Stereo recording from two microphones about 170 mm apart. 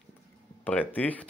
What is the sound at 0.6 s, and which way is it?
Speech, 10° left (ahead or behind).